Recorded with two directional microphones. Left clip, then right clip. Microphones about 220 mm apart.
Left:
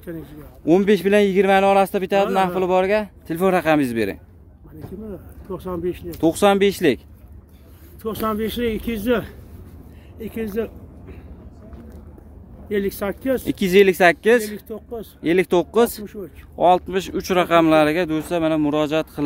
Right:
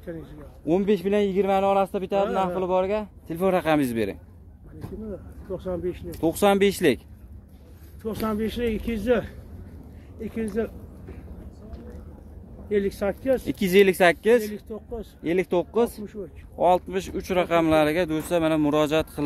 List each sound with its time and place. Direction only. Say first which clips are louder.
0.0 s a man's voice: left 3 dB; 55° left (ahead or behind)
0.7 s speech: left 7 dB; 25° left (ahead or behind)
5.5 s speech: left 3 dB; 50° left (ahead or behind)
6.2 s speech: left 4 dB; 15° left (ahead or behind)
8.0 s speech: left 5 dB; 55° left (ahead or behind)
12.6 s speech: left 1 dB; 55° left (ahead or behind)
13.5 s speech: left 5 dB; 10° left (ahead or behind)
14.5 s speech: left 4 dB; 55° left (ahead or behind)
15.2 s speech: left 6 dB; 20° left (ahead or behind); by 19.2 s centre (ahead or behind)